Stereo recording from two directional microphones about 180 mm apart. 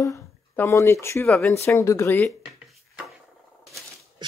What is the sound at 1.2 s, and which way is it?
Speech, 5° left (ahead or behind).